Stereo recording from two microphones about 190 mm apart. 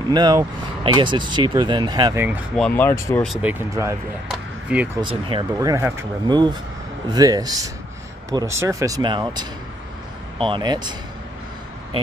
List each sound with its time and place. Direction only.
0.1 s speech: 20° right (ahead or behind)
2.5 s speech: 5° left (ahead or behind)
3.3 s speech: 10° right (ahead or behind)
4.3 s a sound: 5° right (ahead or behind)
5.0 s speech: 20° right (ahead or behind)